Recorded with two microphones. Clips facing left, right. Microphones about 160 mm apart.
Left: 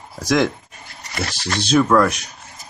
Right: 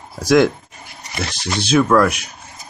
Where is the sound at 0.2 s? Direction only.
Centre (ahead or behind).